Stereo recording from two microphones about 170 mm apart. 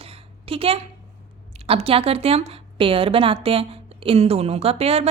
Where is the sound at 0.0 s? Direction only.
35° right (ahead or behind).